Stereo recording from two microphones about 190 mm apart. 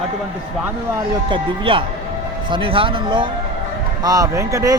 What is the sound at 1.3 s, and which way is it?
A man's voice, 25° right (ahead or behind).